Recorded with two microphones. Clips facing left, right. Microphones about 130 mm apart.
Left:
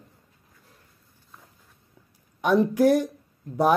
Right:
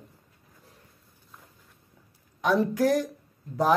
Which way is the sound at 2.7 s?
10° left (ahead or behind).